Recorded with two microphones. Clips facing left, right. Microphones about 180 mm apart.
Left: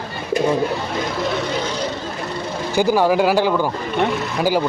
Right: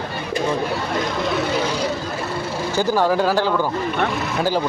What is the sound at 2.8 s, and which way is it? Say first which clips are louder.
Speech: left 3 dB; 10° left (ahead or behind).